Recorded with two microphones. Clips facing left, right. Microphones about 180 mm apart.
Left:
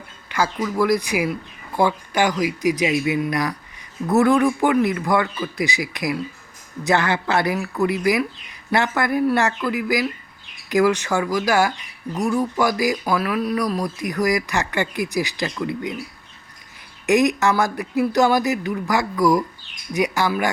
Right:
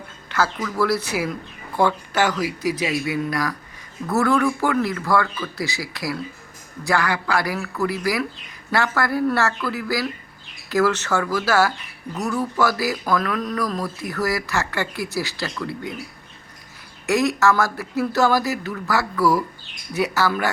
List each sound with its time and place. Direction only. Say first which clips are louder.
0.3 s a man's voice: left 1 dB; 15° left (ahead or behind)
17.1 s speech: left 2 dB; 20° left (ahead or behind)